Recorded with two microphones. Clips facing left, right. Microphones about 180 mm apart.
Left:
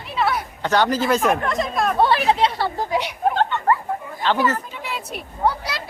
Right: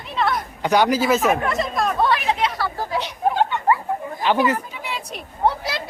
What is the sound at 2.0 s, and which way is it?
Speech, 30° left (ahead or behind).